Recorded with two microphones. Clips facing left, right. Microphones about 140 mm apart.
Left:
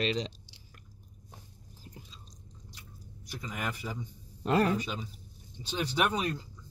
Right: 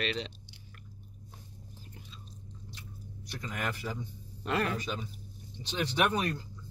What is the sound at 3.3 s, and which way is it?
Speech, 10° left (ahead or behind).